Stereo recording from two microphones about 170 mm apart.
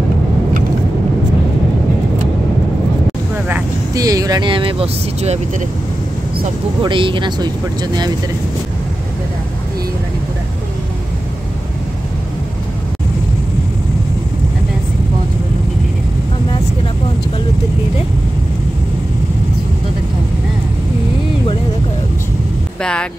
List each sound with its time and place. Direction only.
3.9 s speech: 20° right (ahead or behind); by 5.4 s 35° right (ahead or behind)
6.8 s speech: 30° right (ahead or behind)
22.8 s music: 5° left (ahead or behind)